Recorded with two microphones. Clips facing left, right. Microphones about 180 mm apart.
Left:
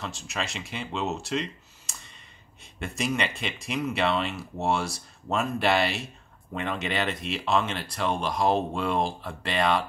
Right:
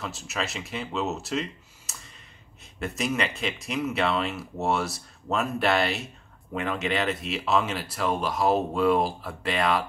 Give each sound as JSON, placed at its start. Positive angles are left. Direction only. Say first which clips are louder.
{"t": 0.0, "sound": "speech", "louder": "right 1 dB", "side_deg": -5}